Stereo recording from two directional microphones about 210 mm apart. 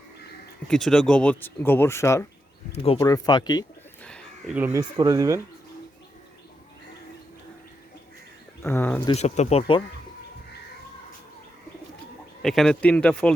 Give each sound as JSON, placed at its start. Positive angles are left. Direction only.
{"t": 0.7, "sound": "speech", "side_deg": 0}
{"t": 2.7, "sound": "speech", "side_deg": 25}
{"t": 3.0, "sound": "speech", "side_deg": 15}
{"t": 4.5, "sound": "speech", "side_deg": -10}
{"t": 8.6, "sound": "speech", "side_deg": 10}
{"t": 9.0, "sound": "speech", "side_deg": 30}
{"t": 12.4, "sound": "speech", "side_deg": 0}